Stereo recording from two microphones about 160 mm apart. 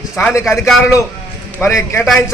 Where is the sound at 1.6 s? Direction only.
15° left (ahead or behind).